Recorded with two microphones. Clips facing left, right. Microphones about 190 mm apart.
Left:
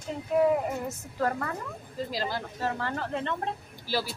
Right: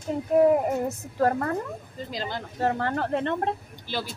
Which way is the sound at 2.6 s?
55° right (ahead or behind).